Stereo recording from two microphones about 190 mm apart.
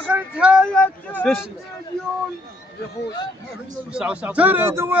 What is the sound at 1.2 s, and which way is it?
Speech, centre (ahead or behind).